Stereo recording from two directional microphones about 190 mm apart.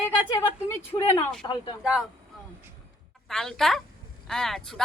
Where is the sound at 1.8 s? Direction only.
5° right (ahead or behind).